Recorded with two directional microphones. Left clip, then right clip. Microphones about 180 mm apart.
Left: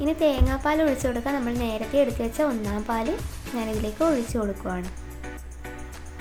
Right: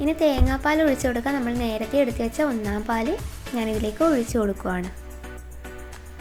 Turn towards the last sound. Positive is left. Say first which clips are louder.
# right 4 dB
turn(degrees=-20)  # may be behind; listen again after turning